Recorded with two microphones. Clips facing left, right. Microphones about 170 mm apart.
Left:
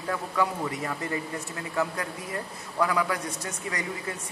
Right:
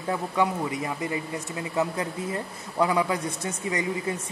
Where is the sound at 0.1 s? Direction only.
20° right (ahead or behind).